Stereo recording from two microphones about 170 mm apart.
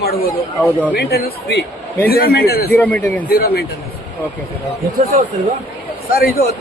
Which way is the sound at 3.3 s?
65° left (ahead or behind).